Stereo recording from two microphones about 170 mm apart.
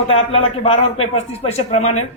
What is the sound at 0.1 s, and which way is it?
A man's voice, 35° left (ahead or behind).